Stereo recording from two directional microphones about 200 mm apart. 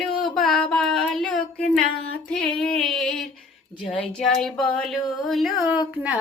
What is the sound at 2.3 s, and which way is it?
Female singing, 5° left (ahead or behind).